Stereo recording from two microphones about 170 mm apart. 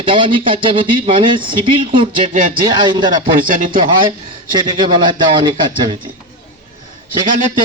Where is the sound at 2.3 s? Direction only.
50° right (ahead or behind).